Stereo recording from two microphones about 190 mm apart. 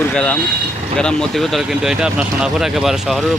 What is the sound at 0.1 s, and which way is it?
Speech, 5° left (ahead or behind).